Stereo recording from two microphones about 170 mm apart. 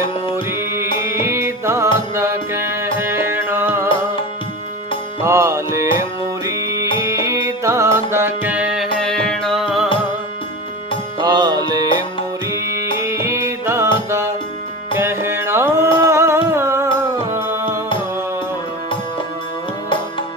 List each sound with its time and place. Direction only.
0.5 s music: 15° right (ahead or behind)
5.2 s music: 15° right (ahead or behind); by 9.8 s centre (ahead or behind)
11.1 s music: 25° right (ahead or behind)